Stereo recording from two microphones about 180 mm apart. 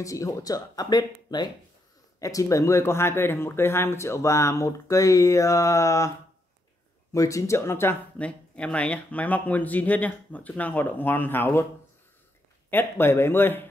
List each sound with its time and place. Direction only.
0.0 s speech: 20° left (ahead or behind)
12.6 s speech: 10° left (ahead or behind)